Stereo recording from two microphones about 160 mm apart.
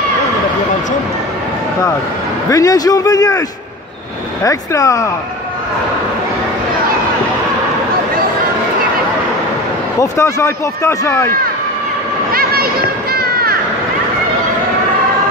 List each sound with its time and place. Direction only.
2.5 s a man's voice: 20° left (ahead or behind)
9.9 s speech: 20° left (ahead or behind)
12.3 s a sound: 70° right (ahead or behind)